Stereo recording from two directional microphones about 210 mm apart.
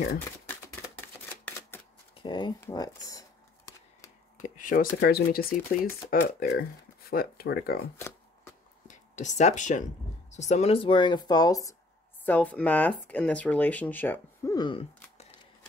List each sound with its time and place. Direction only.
2.2 s speech: 20° left (ahead or behind)
2.6 s a sound: 15° left (ahead or behind)
4.4 s speech: 40° left (ahead or behind)
8.8 s speech: 35° left (ahead or behind)